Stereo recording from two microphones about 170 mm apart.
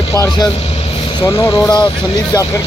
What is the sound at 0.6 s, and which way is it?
Vehicle, 35° left (ahead or behind).